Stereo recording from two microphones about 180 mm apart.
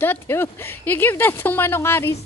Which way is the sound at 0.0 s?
10° left (ahead or behind).